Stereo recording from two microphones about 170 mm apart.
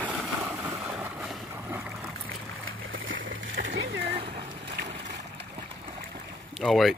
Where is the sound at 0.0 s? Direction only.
15° right (ahead or behind).